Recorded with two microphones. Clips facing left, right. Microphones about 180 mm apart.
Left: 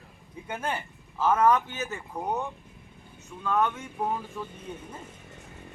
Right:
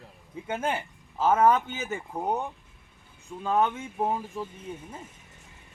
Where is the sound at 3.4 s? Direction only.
25° right (ahead or behind).